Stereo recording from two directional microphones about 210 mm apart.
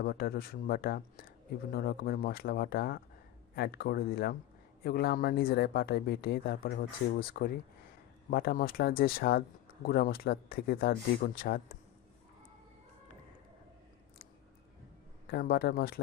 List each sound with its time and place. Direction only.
0.0 s speech: 45° left (ahead or behind)
15.3 s speech: 45° left (ahead or behind)